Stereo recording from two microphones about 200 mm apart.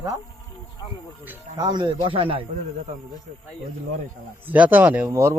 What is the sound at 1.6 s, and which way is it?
A man's voice, 20° right (ahead or behind).